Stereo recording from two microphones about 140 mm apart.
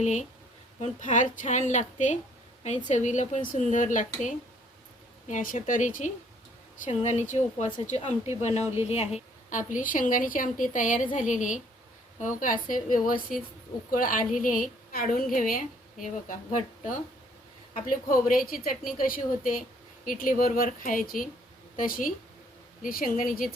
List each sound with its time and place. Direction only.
0.0 s a woman's voice: 55° left (ahead or behind)
8.6 s a woman's voice: 20° right (ahead or behind)
8.9 s a woman's voice: 50° left (ahead or behind); by 13.4 s 85° left
13.9 s a woman's voice: 75° left (ahead or behind)
17.7 s a woman's voice: 85° left